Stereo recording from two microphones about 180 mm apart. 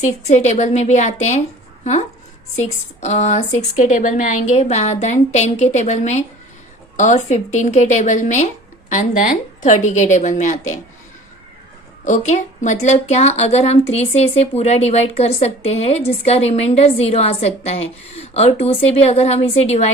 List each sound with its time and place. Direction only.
0.0 s a woman's voice: 40° left (ahead or behind)
12.0 s a woman's voice: 40° left (ahead or behind)